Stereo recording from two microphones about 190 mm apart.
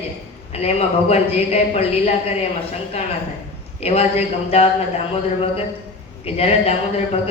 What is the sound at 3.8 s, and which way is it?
Speech, 35° left (ahead or behind).